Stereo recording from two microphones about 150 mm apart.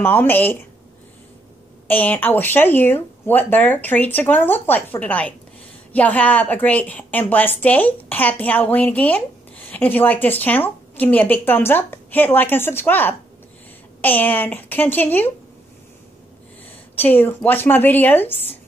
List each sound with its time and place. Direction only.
0.0 s a woman's voice: 15° left (ahead or behind)
1.9 s a woman's voice: 10° left (ahead or behind)
16.9 s a woman's voice: 10° left (ahead or behind)